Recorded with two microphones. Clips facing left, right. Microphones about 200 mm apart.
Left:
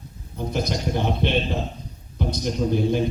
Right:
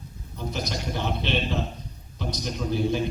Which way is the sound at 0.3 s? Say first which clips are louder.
Left 5 dB; 55° left (ahead or behind).